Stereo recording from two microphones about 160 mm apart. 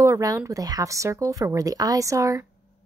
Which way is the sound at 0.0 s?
20° right (ahead or behind).